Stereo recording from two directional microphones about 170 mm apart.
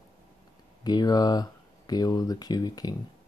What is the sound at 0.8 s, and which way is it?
Speech, 25° left (ahead or behind).